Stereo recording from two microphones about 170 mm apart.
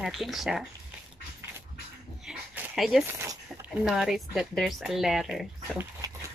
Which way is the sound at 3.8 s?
Centre (ahead or behind).